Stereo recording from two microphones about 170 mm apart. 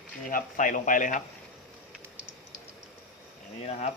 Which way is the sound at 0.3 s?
50° left (ahead or behind).